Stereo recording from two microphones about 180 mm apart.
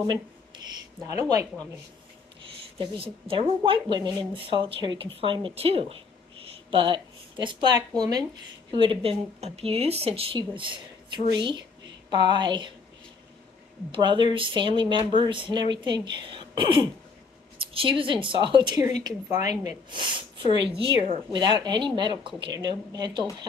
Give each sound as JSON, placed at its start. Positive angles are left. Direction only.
{"t": 2.8, "sound": "a woman's voice", "side_deg": -30}
{"t": 13.9, "sound": "a woman's voice", "side_deg": -25}